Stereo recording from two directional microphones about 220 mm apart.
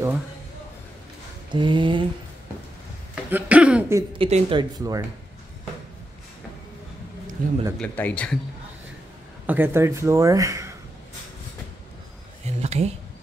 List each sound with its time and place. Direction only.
1.5 s speech: 20° right (ahead or behind)
3.3 s speech: 5° right (ahead or behind)
4.1 s speech: 25° right (ahead or behind)
7.4 s speech: 40° right (ahead or behind)
7.8 s speech: 5° left (ahead or behind)
9.5 s speech: 10° right (ahead or behind)
12.4 s a sound: 30° right (ahead or behind)